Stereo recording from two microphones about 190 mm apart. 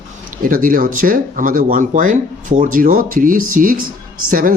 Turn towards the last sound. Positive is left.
turn(degrees=-45)  # may be behind; listen again after turning